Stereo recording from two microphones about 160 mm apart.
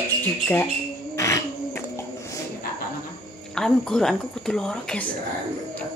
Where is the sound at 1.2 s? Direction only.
20° left (ahead or behind).